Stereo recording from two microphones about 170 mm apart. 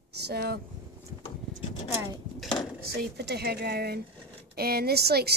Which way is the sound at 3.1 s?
75° right (ahead or behind).